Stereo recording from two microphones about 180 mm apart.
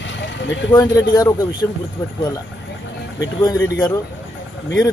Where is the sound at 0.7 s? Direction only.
20° left (ahead or behind).